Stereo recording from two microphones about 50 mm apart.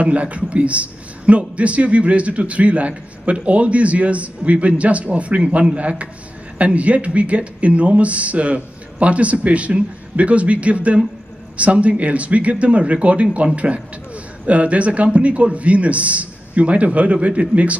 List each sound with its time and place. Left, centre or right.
0.0 s a man's voice: right